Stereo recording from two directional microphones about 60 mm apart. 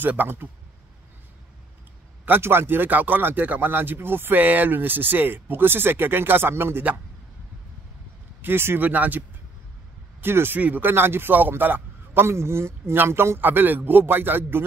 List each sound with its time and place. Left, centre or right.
0.0 s speech: right
2.2 s speech: right
8.4 s speech: right
10.2 s speech: right